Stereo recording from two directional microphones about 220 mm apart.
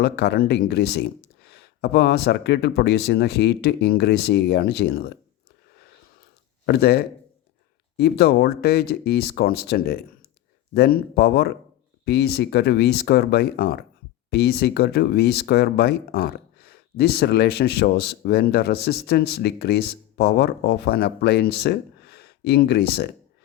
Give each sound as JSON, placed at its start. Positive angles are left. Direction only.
{"t": 0.0, "sound": "speech", "side_deg": 45}
{"t": 6.7, "sound": "speech", "side_deg": 45}